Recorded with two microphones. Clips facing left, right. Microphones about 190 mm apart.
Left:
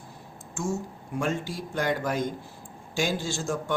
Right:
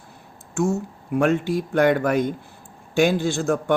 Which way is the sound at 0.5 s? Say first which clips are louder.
Right 8 dB; 65° right (ahead or behind).